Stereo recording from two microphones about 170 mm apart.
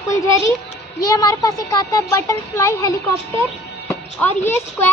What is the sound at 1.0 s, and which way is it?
Speech, 20° left (ahead or behind).